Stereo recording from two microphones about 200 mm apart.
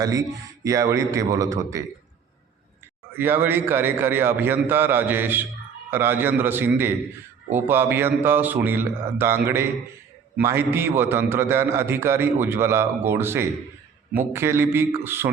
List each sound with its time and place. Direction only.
0.0 s a man's voice: 15° right (ahead or behind)
3.2 s a man's voice: 10° right (ahead or behind)